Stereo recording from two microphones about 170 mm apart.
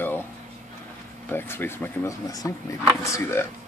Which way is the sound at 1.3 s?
10° left (ahead or behind).